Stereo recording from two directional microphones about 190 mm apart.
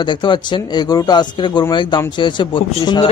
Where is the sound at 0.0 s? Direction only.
25° left (ahead or behind).